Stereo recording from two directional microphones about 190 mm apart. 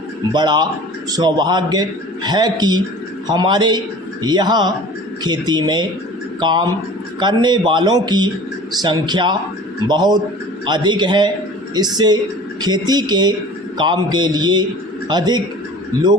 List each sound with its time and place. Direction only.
0.3 s a man's voice: 25° right (ahead or behind)